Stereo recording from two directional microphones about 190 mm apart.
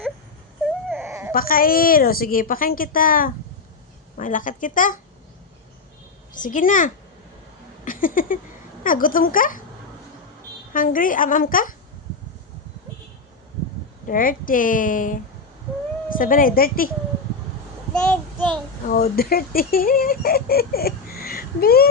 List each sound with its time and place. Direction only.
0.9 s a sound: 10° right (ahead or behind)
1.3 s speech: 50° left (ahead or behind)
6.3 s speech: 45° left (ahead or behind)
10.8 s speech: 45° left (ahead or behind)
14.1 s speech: 45° left (ahead or behind)
17.9 s child singing: 5° left (ahead or behind)
18.9 s speech: 55° left (ahead or behind)